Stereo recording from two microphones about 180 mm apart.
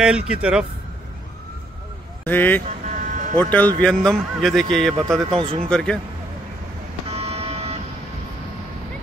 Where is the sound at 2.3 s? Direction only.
10° left (ahead or behind).